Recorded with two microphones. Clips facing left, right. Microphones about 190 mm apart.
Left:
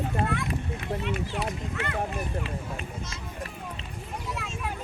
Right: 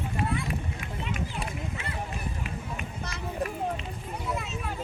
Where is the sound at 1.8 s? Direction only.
70° left (ahead or behind).